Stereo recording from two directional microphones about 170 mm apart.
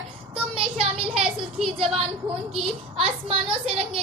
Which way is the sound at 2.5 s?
35° right (ahead or behind).